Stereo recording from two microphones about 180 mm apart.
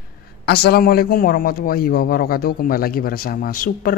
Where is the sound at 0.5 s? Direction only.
60° left (ahead or behind).